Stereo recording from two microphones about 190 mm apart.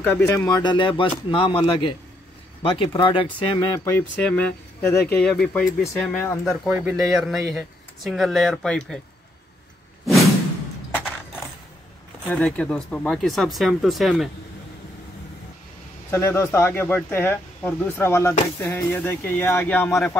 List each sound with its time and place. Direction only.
0.0 s speech: 10° left (ahead or behind)
6.5 s speech: 5° right (ahead or behind)
12.3 s speech: 5° left (ahead or behind)
16.1 s speech: 15° left (ahead or behind)